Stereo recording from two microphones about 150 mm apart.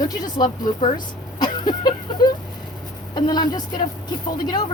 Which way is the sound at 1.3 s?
30° left (ahead or behind).